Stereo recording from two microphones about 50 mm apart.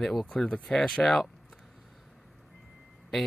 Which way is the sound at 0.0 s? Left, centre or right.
Centre.